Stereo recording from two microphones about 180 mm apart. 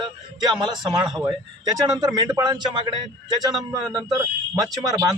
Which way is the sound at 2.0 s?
20° right (ahead or behind).